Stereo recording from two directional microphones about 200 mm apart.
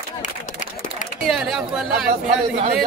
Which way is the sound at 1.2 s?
Centre (ahead or behind).